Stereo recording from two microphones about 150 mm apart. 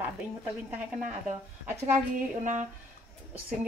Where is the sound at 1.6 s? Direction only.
15° right (ahead or behind).